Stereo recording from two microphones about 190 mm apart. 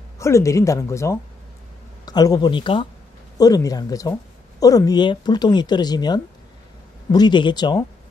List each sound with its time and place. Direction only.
0.2 s a woman's voice: 15° left (ahead or behind)